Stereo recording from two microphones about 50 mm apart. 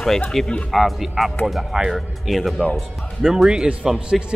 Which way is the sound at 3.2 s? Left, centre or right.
Centre.